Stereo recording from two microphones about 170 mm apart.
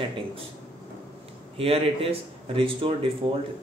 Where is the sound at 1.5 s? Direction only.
35° right (ahead or behind).